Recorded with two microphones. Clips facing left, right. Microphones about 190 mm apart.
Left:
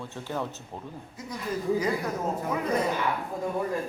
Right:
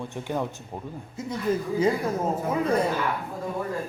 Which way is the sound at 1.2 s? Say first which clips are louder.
Right 8 dB; 25° right (ahead or behind).